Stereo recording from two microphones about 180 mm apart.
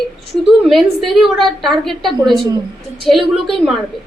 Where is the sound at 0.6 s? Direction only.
Centre (ahead or behind).